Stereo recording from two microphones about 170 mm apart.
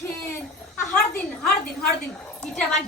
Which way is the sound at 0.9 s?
5° left (ahead or behind).